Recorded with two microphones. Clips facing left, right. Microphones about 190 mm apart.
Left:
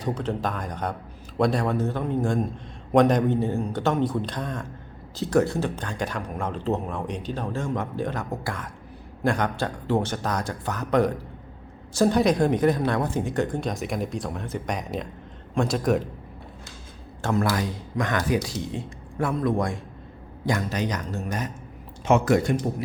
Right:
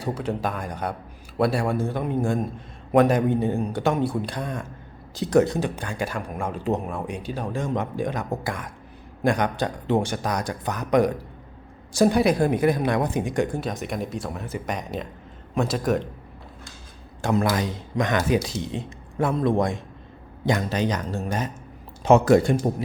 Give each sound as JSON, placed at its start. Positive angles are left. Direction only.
{"t": 0.0, "sound": "a man's voice", "side_deg": -10}
{"t": 17.2, "sound": "a man's voice", "side_deg": -15}